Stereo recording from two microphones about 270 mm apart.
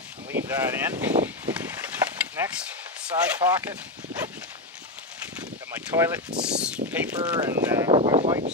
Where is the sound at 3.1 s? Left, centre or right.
Centre.